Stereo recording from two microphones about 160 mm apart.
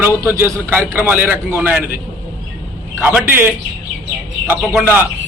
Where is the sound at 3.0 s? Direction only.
10° right (ahead or behind).